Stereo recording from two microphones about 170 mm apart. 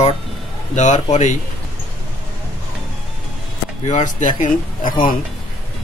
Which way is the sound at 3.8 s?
45° left (ahead or behind).